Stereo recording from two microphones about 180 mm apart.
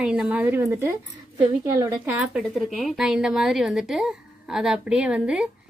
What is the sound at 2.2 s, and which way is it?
A woman's voice, centre (ahead or behind).